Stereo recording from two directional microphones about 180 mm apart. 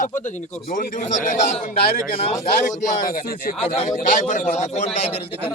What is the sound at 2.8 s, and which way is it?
A man's voice, 50° left (ahead or behind).